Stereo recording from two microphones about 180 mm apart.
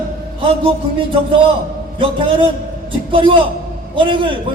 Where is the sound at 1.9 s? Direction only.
30° right (ahead or behind).